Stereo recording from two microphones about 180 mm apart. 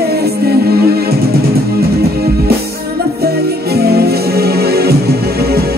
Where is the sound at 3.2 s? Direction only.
60° right (ahead or behind).